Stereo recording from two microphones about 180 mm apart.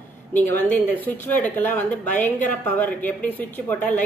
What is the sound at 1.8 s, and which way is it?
Speech, 45° left (ahead or behind).